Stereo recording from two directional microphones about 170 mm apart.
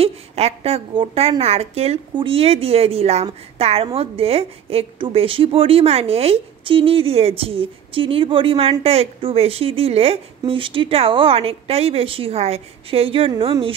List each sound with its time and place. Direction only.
0.0 s a woman's voice: 35° right (ahead or behind)